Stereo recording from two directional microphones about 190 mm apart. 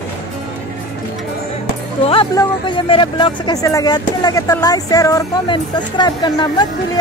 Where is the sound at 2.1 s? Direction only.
25° left (ahead or behind).